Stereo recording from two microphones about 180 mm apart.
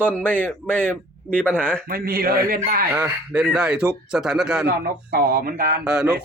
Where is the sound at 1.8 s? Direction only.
55° right (ahead or behind).